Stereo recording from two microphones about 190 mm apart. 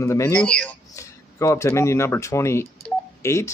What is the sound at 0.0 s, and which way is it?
Speech, 15° left (ahead or behind).